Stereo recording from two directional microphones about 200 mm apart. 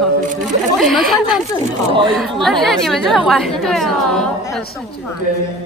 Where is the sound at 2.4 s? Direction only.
Centre (ahead or behind).